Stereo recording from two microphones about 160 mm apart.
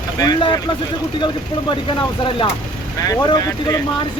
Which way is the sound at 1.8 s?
30° left (ahead or behind).